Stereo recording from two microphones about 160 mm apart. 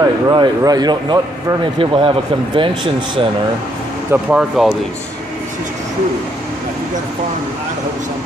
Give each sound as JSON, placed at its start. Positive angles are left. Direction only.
{"t": 0.0, "sound": "a man's voice", "side_deg": -25}
{"t": 4.1, "sound": "speech", "side_deg": -5}